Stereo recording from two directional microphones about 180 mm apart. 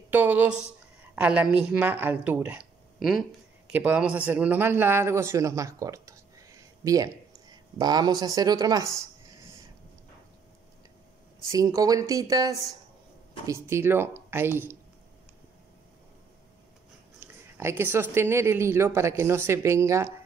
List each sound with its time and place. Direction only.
0.1 s a man's voice: 10° right (ahead or behind)
11.5 s speech: 20° right (ahead or behind)
17.2 s speech: 15° right (ahead or behind)